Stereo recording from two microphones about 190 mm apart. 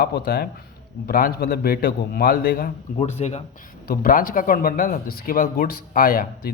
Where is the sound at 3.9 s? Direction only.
50° left (ahead or behind).